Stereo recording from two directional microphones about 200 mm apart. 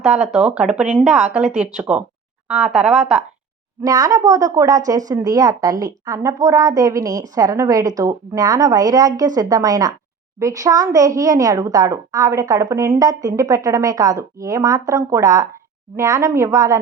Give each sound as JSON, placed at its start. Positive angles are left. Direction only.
{"t": 0.3, "sound": "a woman's voice", "side_deg": -5}
{"t": 3.8, "sound": "a woman's voice", "side_deg": -20}